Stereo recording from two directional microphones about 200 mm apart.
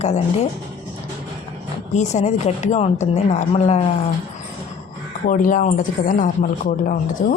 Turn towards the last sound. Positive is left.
turn(degrees=40)  # may be behind; listen again after turning